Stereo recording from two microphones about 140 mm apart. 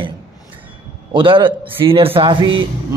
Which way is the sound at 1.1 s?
35° right (ahead or behind).